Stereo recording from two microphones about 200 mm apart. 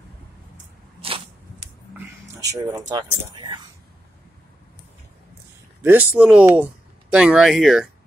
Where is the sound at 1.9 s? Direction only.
15° right (ahead or behind).